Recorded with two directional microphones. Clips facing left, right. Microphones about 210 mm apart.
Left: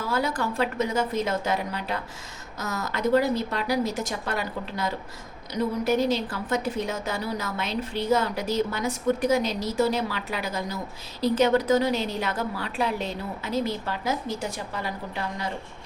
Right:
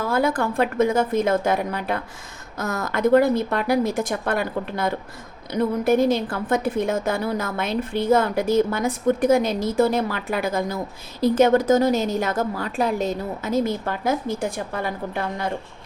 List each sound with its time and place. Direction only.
0.0 s a woman's voice: 50° right (ahead or behind)